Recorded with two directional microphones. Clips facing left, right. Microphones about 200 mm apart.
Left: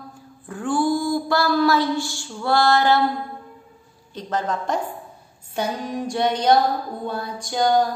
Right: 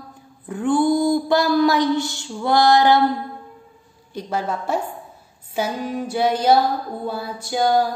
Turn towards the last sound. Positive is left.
turn(degrees=-5)  # may be behind; listen again after turning